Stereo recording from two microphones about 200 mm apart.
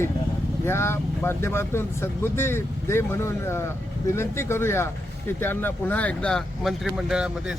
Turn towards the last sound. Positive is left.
turn(degrees=-5)  # may be behind; listen again after turning